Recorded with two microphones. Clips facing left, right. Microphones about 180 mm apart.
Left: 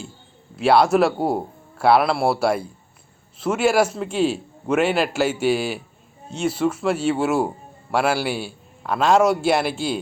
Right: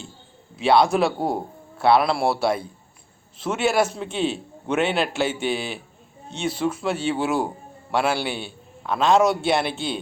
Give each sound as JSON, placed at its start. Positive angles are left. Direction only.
{"t": 0.5, "sound": "a man's voice", "side_deg": 5}